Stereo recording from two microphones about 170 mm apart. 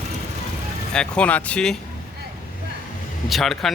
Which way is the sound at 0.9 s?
5° left (ahead or behind).